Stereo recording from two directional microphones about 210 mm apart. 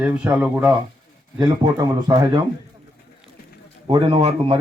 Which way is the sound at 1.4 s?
15° right (ahead or behind).